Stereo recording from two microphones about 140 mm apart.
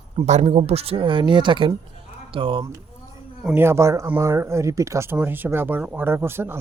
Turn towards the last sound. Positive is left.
turn(degrees=-15)  # may be behind; listen again after turning